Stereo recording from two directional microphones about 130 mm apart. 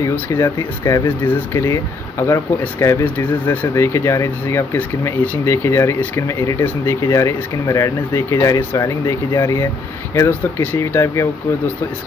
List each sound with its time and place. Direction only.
0.0 s speech: 20° left (ahead or behind)